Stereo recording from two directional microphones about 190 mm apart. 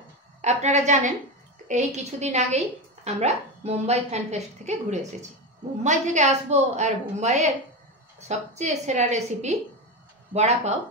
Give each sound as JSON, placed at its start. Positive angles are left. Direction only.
{"t": 0.4, "sound": "a woman's voice", "side_deg": -35}